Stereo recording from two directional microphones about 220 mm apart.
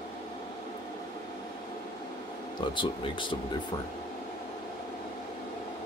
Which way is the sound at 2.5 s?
20° left (ahead or behind).